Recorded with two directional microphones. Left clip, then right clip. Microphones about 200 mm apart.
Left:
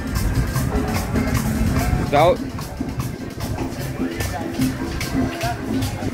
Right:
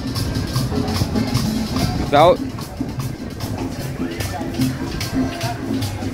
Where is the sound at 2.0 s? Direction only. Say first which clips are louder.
Right 3 dB; 30° right (ahead or behind).